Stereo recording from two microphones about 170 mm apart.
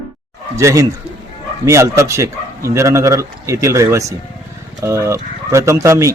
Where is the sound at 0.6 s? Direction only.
15° right (ahead or behind).